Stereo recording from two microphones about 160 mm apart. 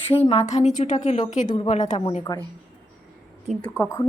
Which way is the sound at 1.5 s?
30° left (ahead or behind).